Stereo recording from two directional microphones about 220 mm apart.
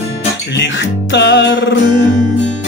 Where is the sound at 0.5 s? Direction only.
55° left (ahead or behind).